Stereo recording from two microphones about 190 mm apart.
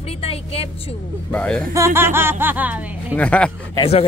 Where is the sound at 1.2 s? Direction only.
5° left (ahead or behind).